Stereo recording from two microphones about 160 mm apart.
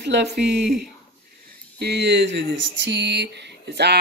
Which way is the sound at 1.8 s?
90° right.